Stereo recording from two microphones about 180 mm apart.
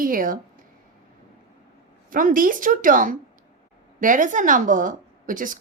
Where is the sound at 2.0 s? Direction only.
50° right (ahead or behind).